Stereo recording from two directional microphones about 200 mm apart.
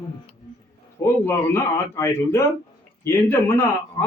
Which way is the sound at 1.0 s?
10° left (ahead or behind).